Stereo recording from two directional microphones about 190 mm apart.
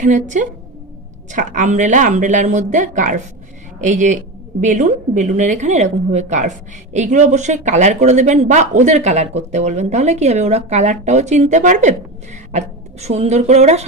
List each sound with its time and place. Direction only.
0.0 s a woman's voice: 40° right (ahead or behind)